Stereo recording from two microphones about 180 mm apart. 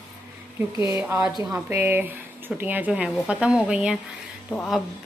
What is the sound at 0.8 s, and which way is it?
Speech, 15° right (ahead or behind).